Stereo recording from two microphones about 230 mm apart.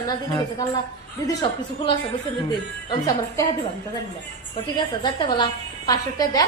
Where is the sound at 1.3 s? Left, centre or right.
Centre.